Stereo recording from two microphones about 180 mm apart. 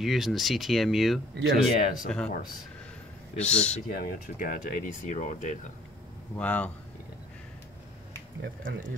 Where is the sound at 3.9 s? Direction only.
50° left (ahead or behind).